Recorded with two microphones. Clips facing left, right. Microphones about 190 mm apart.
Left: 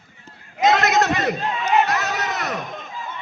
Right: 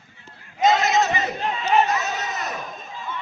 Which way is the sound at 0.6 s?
75° left (ahead or behind).